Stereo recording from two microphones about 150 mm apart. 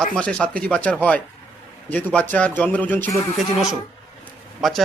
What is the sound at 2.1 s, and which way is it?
Speech, 10° left (ahead or behind).